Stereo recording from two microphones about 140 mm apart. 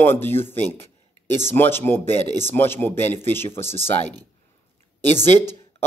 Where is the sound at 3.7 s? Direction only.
45° left (ahead or behind).